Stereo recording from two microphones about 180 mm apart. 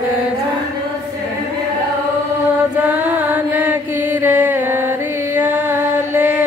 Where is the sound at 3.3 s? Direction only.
10° right (ahead or behind).